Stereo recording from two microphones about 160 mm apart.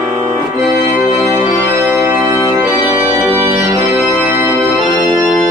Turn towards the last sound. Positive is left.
turn(degrees=0)  # may be behind; listen again after turning